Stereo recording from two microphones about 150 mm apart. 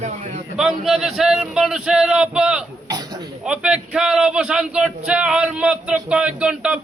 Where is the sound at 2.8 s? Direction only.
25° right (ahead or behind).